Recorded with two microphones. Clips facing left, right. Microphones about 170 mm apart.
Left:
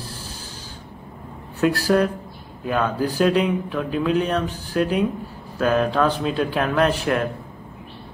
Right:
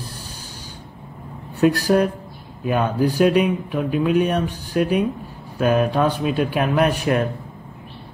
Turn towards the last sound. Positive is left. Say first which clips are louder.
# right 1 dB
turn(degrees=-15)  # may be behind; listen again after turning